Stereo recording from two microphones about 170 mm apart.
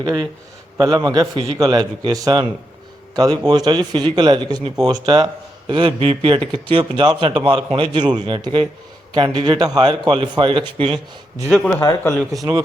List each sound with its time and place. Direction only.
0.0 s a man's voice: 25° right (ahead or behind)
11.4 s speech: 5° left (ahead or behind)
11.8 s speech: 20° left (ahead or behind)